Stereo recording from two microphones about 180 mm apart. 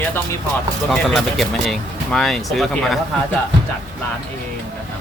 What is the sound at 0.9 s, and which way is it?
Speech, centre (ahead or behind).